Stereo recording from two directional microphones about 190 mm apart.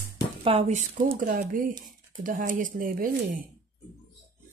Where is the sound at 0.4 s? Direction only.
30° right (ahead or behind); by 3.4 s 50° right (ahead or behind).